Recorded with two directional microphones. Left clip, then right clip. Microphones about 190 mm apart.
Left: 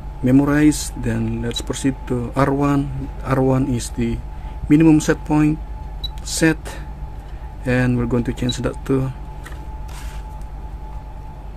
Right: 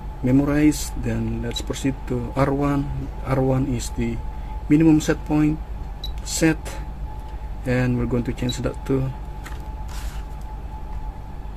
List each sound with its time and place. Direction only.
0.2 s speech: 25° left (ahead or behind)